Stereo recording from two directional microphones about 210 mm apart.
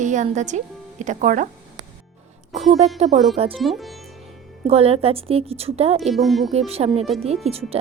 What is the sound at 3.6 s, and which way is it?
Speech, centre (ahead or behind).